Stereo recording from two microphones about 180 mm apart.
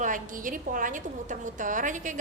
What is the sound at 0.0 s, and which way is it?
A woman's voice, 45° right (ahead or behind).